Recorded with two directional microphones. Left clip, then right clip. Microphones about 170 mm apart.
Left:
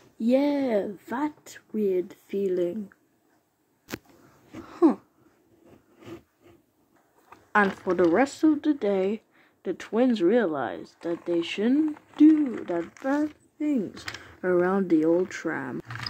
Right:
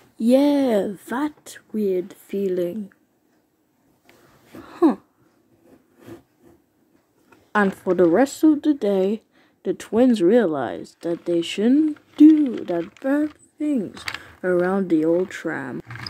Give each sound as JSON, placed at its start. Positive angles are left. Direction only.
{"t": 0.2, "sound": "speech", "side_deg": -30}
{"t": 4.6, "sound": "a sound", "side_deg": -5}
{"t": 7.8, "sound": "speech", "side_deg": -15}
{"t": 13.6, "sound": "speech", "side_deg": -10}